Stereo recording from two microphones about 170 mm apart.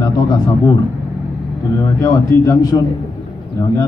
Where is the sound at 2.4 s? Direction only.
20° left (ahead or behind).